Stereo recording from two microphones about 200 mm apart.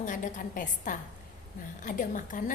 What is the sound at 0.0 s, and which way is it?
A woman's voice, 40° left (ahead or behind).